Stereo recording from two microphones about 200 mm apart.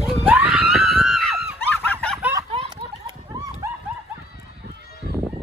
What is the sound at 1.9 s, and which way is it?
Snicker, 5° left (ahead or behind).